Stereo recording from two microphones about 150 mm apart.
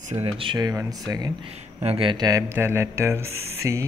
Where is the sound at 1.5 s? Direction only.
40° right (ahead or behind); by 3.8 s 20° right (ahead or behind).